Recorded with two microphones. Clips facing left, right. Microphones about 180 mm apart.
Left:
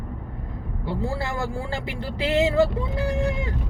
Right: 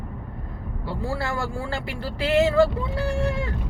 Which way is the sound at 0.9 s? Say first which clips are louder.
Even; 20° left (ahead or behind).